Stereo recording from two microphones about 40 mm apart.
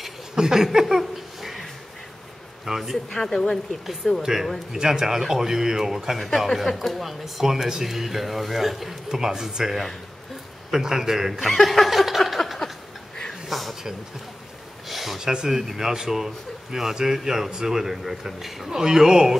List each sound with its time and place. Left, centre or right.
0.4 s speech: centre
0.7 s a sound: centre
2.6 s speech: centre
3.1 s a woman's voice: centre
3.8 s speech: centre
6.1 s speech: centre
11.4 s a sound: centre
14.9 s speech: centre